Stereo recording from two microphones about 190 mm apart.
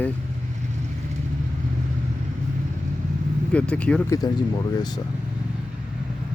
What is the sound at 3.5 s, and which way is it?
Speech, 5° left (ahead or behind).